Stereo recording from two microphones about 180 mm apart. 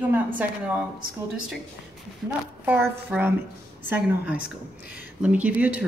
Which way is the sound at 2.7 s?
10° right (ahead or behind).